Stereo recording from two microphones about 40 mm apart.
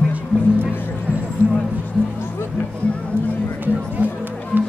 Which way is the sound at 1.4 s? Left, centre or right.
Left.